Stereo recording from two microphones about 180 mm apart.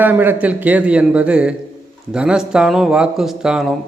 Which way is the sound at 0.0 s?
10° right (ahead or behind).